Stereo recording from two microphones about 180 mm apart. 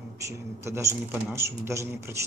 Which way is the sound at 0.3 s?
15° right (ahead or behind).